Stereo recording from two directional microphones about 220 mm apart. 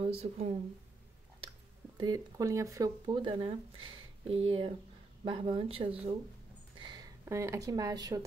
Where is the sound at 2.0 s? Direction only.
15° right (ahead or behind).